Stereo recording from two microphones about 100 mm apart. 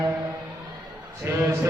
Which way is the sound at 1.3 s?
25° right (ahead or behind).